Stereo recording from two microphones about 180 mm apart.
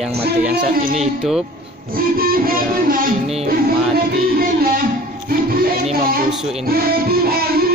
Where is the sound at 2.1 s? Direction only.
55° right (ahead or behind).